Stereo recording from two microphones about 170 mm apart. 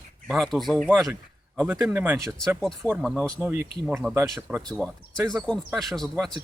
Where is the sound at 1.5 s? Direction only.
15° right (ahead or behind).